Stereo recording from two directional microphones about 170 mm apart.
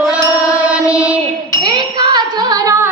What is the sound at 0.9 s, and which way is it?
Child singing, 5° right (ahead or behind).